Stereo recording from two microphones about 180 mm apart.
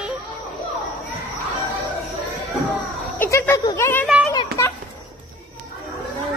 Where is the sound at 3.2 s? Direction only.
15° left (ahead or behind).